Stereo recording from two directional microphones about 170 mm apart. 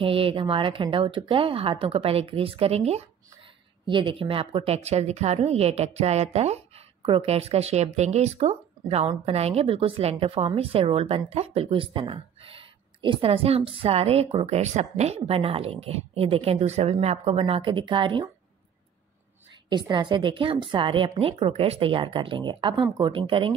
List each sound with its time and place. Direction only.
0.0 s a woman's voice: 35° right (ahead or behind)
3.8 s a woman's voice: 30° right (ahead or behind)
19.7 s a woman's voice: 25° right (ahead or behind)